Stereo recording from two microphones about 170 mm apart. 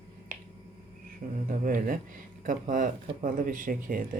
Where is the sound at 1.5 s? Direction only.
55° right (ahead or behind).